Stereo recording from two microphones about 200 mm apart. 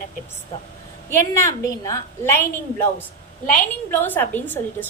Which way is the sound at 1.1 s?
15° left (ahead or behind).